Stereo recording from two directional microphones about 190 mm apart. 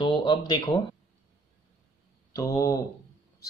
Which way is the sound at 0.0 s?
25° left (ahead or behind).